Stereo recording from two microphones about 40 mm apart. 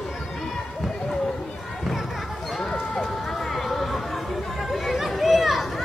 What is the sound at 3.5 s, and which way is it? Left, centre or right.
Chatter, centre.